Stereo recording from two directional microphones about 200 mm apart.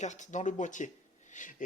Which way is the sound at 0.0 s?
35° left (ahead or behind).